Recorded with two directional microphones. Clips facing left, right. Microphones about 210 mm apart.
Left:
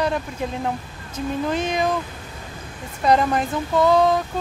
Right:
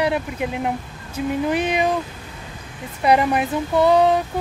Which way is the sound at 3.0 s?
10° right (ahead or behind).